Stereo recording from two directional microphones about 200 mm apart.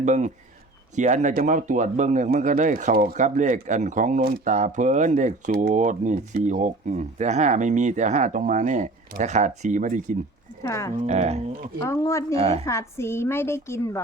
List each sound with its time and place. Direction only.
0.0 s speech: 40° right (ahead or behind)
10.6 s a woman's voice: 15° left (ahead or behind)
11.0 s speech: 35° right (ahead or behind)
11.8 s a woman's voice: 15° left (ahead or behind)
12.3 s speech: 30° right (ahead or behind)
12.6 s a woman's voice: 15° left (ahead or behind)